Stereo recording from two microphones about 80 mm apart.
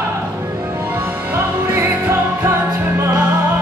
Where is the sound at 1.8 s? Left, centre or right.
Right.